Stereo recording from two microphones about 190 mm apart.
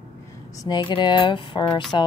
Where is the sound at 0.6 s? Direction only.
20° left (ahead or behind).